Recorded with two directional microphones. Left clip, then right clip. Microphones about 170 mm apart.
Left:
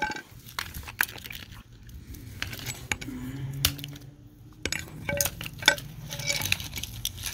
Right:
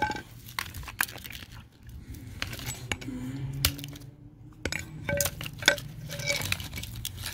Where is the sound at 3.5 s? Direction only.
55° right (ahead or behind).